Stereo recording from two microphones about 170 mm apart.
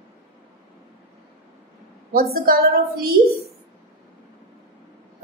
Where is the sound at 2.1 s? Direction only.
60° right (ahead or behind).